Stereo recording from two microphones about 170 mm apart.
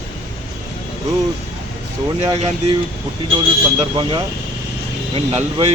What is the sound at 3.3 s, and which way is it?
Speech, 30° right (ahead or behind).